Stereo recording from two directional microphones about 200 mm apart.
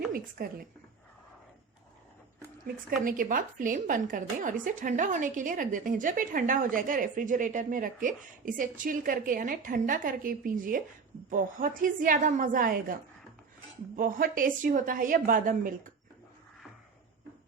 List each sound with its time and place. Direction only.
0.4 s a woman's voice: 45° right (ahead or behind)
3.0 s a woman's voice: 45° right (ahead or behind)